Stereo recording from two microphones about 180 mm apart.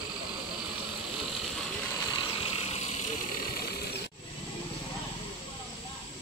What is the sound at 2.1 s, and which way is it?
Vehicle, 35° left (ahead or behind).